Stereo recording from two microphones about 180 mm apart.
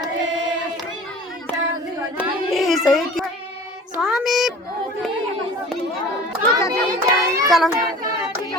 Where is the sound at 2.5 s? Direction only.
Centre (ahead or behind).